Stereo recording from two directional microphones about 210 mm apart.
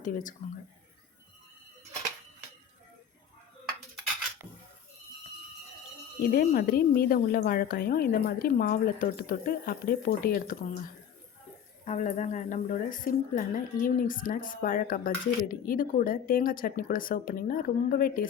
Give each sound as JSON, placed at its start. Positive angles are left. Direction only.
{"t": 0.0, "sound": "a woman's voice", "side_deg": 40}
{"t": 6.2, "sound": "speech", "side_deg": 45}
{"t": 11.9, "sound": "a woman's voice", "side_deg": 35}